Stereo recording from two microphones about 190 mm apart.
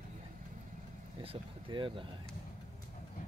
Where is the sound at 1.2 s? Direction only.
25° right (ahead or behind).